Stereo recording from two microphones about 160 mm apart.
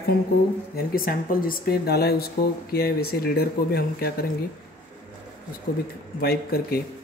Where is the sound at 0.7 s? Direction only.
65° left (ahead or behind).